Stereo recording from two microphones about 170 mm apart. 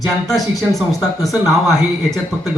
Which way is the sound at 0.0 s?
Centre (ahead or behind).